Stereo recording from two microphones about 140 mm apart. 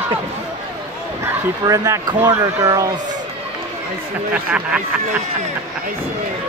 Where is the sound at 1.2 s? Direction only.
25° right (ahead or behind).